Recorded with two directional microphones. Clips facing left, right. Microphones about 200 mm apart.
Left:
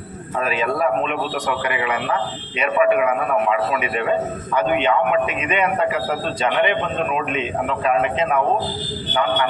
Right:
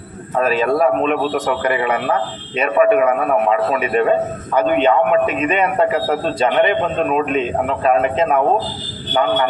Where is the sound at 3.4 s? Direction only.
40° right (ahead or behind).